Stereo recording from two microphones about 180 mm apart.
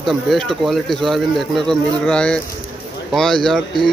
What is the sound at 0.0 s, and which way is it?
Speech, centre (ahead or behind).